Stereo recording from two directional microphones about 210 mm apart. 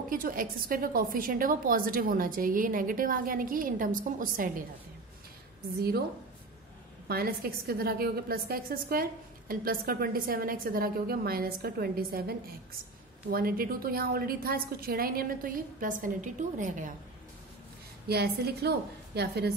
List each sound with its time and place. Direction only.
0.1 s a woman's voice: 40° right (ahead or behind)
5.8 s a woman's voice: 50° right (ahead or behind)
7.1 s a woman's voice: 45° right (ahead or behind)
18.0 s a woman's voice: 50° right (ahead or behind)